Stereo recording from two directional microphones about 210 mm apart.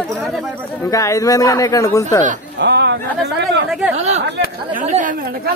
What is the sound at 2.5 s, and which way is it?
Speech, 55° right (ahead or behind).